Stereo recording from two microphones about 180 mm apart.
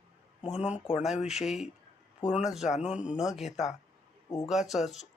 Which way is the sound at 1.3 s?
Centre (ahead or behind).